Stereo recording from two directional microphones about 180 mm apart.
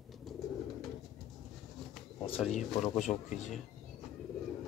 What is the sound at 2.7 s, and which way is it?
Speech, 40° left (ahead or behind).